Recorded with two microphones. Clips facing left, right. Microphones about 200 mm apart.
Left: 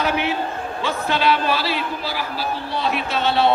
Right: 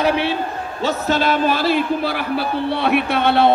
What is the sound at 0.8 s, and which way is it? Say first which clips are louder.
A man's voice: right 3 dB; 45° right (ahead or behind).